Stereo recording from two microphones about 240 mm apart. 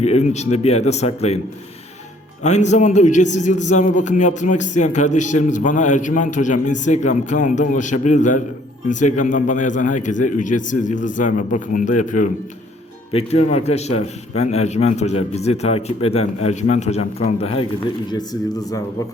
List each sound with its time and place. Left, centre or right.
0.0 s a man's voice: left
2.4 s a man's voice: left